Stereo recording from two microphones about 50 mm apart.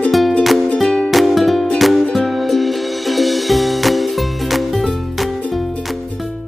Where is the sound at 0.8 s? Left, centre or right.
Centre.